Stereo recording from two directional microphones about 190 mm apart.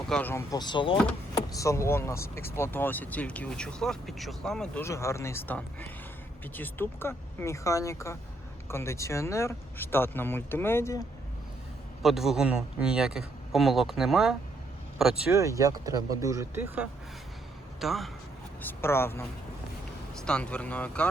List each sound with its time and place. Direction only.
0.1 s speech: 10° left (ahead or behind)
12.0 s a man's voice: centre (ahead or behind)
15.3 s a man's voice: 15° right (ahead or behind); by 18.1 s centre (ahead or behind)
18.6 s speech: 10° left (ahead or behind)